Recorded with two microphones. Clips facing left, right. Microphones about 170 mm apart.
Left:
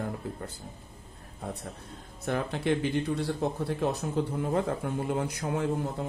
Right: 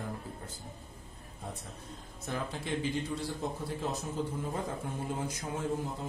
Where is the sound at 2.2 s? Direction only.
65° left (ahead or behind).